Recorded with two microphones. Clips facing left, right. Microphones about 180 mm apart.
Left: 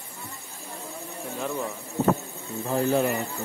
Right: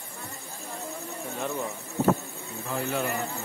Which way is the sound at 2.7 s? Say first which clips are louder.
Left 7 dB; 35° left (ahead or behind).